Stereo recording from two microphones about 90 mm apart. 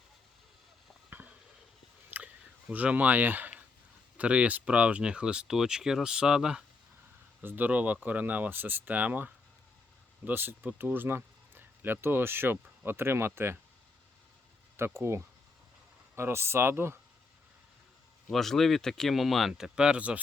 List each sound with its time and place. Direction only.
2.0 s a sound: 15° right (ahead or behind)
4.2 s speech: 15° right (ahead or behind)
7.4 s speech: 20° right (ahead or behind)
14.8 s speech: 30° right (ahead or behind)
18.3 s speech: 5° left (ahead or behind); by 20.1 s 15° right (ahead or behind)